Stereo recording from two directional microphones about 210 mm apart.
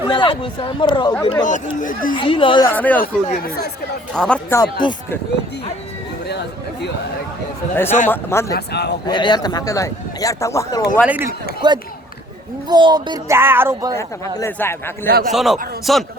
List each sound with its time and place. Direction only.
0.1 s a man's voice: 25° left (ahead or behind)
1.8 s speech: 40° left (ahead or behind)
2.1 s a man's voice: 25° left (ahead or behind)
2.6 s speech: 10° left (ahead or behind)
3.0 s speech: 45° left (ahead or behind)
4.1 s speech: 5° left (ahead or behind); by 4.9 s 20° left (ahead or behind)
8.0 s speech: 10° left (ahead or behind)
8.5 s speech: 50° left (ahead or behind)
9.0 s speech: 20° left (ahead or behind)
11.0 s speech: 5° right (ahead or behind)
11.6 s speech: 20° right (ahead or behind)
14.0 s speech: 15° left (ahead or behind)
15.2 s speech: centre (ahead or behind)